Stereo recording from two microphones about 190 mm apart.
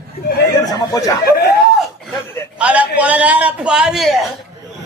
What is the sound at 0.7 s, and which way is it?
Speech, 20° left (ahead or behind).